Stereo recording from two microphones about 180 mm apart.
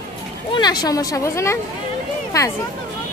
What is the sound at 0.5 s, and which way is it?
A woman's voice, 25° left (ahead or behind).